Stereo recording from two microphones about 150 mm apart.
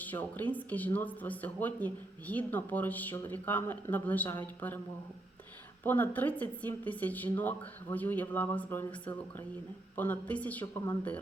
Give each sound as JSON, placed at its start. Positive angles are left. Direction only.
{"t": 0.0, "sound": "speech", "side_deg": 10}
{"t": 5.8, "sound": "speech", "side_deg": 10}